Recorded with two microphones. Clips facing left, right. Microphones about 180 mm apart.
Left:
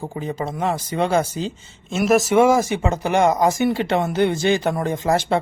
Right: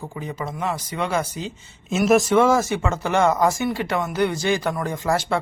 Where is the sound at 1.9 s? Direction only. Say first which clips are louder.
Even; centre (ahead or behind).